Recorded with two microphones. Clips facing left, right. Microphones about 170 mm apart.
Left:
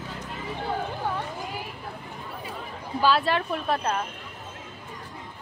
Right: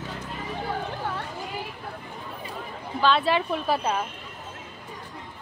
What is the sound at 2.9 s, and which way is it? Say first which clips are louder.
Speech: right 1 dB; 5° left (ahead or behind).